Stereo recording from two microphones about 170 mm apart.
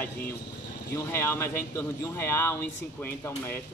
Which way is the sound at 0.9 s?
15° left (ahead or behind).